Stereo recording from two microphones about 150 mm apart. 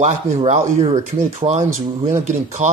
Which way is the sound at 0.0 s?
50° right (ahead or behind).